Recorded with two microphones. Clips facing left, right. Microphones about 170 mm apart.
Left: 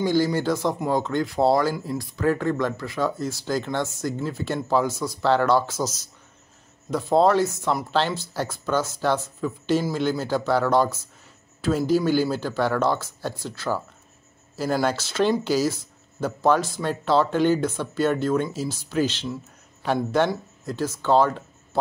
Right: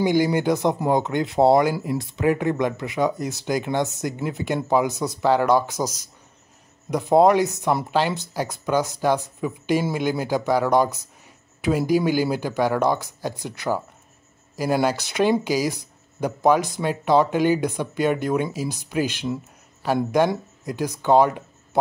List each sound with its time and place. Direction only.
0.0 s speech: 15° right (ahead or behind)